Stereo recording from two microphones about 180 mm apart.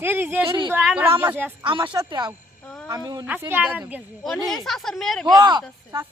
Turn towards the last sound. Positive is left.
turn(degrees=-25)  # may be behind; listen again after turning